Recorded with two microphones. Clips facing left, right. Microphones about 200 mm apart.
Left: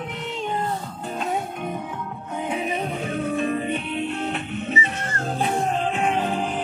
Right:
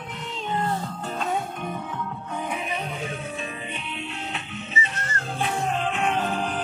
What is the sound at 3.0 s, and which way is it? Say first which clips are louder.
Music: left 8 dB; 55° left (ahead or behind).